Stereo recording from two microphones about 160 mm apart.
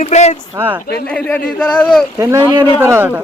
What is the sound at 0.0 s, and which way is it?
Speech, 45° left (ahead or behind).